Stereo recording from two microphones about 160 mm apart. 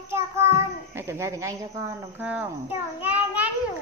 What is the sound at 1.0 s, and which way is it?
A child's voice, 15° right (ahead or behind).